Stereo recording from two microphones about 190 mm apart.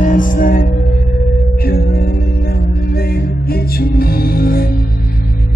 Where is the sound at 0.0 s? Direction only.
45° left (ahead or behind).